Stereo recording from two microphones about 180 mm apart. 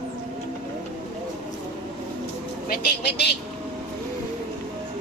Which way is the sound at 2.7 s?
65° left (ahead or behind).